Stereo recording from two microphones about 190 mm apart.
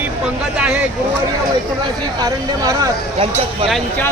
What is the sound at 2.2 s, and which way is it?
Speech, 20° right (ahead or behind).